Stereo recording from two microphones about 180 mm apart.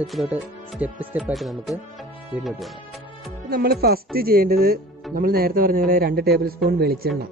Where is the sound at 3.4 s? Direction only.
60° right (ahead or behind).